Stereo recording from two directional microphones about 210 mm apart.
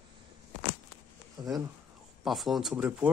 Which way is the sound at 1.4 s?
20° right (ahead or behind).